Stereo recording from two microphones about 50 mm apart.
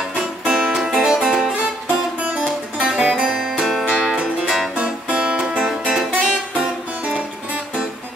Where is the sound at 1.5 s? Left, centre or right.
Right.